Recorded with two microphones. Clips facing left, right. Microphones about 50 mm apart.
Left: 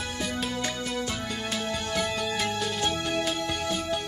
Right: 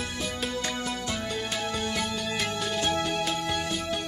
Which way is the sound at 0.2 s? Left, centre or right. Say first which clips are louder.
Left 2 dB; centre.